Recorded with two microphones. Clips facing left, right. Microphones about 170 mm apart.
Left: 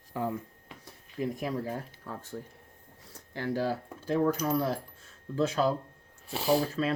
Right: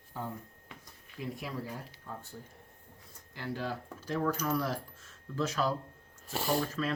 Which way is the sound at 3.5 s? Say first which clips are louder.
Left 6 dB; 35° left (ahead or behind).